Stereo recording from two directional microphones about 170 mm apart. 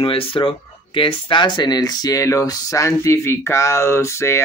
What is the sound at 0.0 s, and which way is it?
Speech, 35° left (ahead or behind).